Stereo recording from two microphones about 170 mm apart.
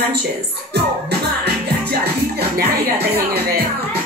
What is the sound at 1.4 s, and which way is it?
Music, 70° right (ahead or behind).